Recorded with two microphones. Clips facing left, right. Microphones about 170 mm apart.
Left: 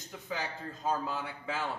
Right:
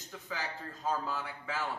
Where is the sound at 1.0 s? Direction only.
20° left (ahead or behind).